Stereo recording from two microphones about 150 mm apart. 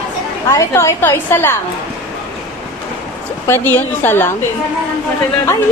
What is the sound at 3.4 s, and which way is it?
Speech, 15° left (ahead or behind).